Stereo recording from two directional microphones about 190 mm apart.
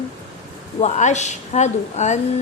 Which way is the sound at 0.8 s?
40° left (ahead or behind).